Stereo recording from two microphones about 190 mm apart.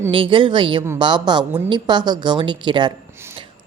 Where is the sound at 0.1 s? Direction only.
25° right (ahead or behind).